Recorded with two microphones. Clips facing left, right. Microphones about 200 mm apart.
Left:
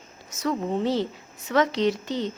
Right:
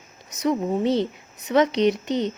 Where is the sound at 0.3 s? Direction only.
20° right (ahead or behind).